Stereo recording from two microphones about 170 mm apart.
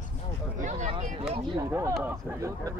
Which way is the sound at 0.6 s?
45° right (ahead or behind).